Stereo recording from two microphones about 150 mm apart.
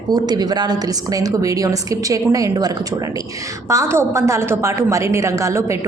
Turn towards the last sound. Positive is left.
turn(degrees=-20)  # may be behind; listen again after turning